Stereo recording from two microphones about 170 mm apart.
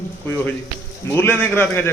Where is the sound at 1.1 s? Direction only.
10° left (ahead or behind).